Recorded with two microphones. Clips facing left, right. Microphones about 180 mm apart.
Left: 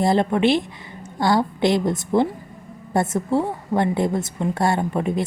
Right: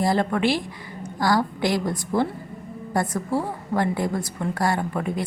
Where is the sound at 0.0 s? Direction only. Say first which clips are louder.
Left 3 dB; 20° left (ahead or behind).